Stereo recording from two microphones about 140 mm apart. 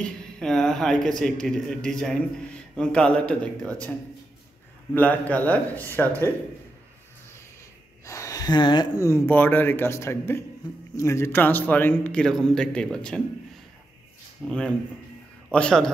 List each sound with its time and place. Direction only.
0.0 s a man's voice: 5° left (ahead or behind)
4.9 s a man's voice: 10° left (ahead or behind)
8.0 s speech: 20° left (ahead or behind)
9.0 s a man's voice: 20° left (ahead or behind)
14.4 s a man's voice: 10° left (ahead or behind)